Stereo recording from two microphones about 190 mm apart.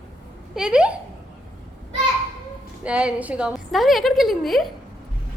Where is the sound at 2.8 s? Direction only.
5° right (ahead or behind).